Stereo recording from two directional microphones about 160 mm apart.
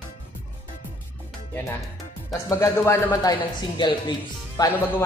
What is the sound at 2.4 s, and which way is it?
Speech, 20° left (ahead or behind).